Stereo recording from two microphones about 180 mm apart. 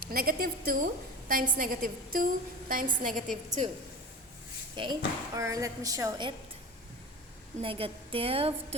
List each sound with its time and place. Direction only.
0.1 s a woman's voice: 55° right (ahead or behind)
4.7 s speech: 25° right (ahead or behind)
7.6 s a woman's voice: 30° right (ahead or behind)